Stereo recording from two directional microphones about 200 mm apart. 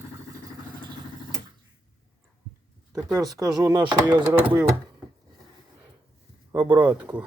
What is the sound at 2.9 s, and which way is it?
Speech, 15° right (ahead or behind).